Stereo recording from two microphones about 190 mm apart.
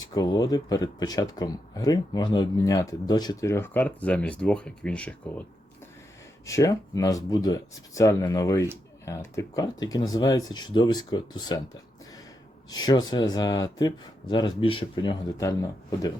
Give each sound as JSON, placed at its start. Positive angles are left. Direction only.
{"t": 0.0, "sound": "speech", "side_deg": 20}
{"t": 6.4, "sound": "speech", "side_deg": 15}
{"t": 12.7, "sound": "speech", "side_deg": 20}